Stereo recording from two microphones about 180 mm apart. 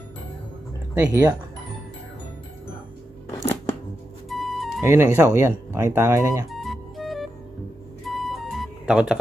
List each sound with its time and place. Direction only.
0.9 s speech: 10° right (ahead or behind)
3.3 s a sound: 15° left (ahead or behind)
4.3 s music: centre (ahead or behind)
4.8 s speech: 15° right (ahead or behind)
6.5 s music: centre (ahead or behind)